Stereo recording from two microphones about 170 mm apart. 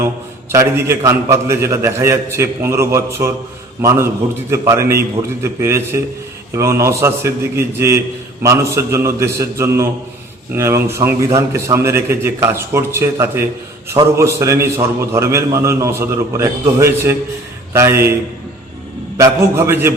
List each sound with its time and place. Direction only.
0.5 s a man's voice: 15° right (ahead or behind)